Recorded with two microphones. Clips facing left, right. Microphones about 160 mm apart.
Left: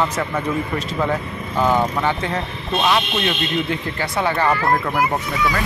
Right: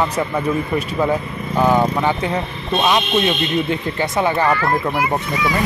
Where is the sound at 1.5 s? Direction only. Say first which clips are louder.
Right 3 dB; 15° right (ahead or behind).